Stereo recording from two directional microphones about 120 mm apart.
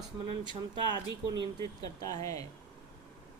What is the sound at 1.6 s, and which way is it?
Speech, 30° left (ahead or behind).